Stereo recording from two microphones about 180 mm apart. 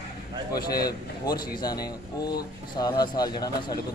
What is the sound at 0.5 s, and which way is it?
Speech, 60° left (ahead or behind).